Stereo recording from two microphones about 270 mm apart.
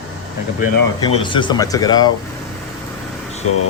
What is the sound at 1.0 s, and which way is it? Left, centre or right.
A man's voice, centre.